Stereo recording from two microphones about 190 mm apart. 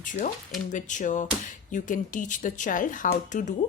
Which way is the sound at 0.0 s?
45° left (ahead or behind).